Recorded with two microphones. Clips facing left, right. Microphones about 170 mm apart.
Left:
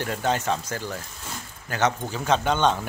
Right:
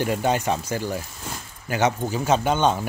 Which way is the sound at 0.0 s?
15° right (ahead or behind).